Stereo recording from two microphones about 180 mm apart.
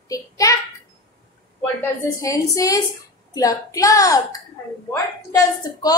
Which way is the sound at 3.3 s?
20° left (ahead or behind).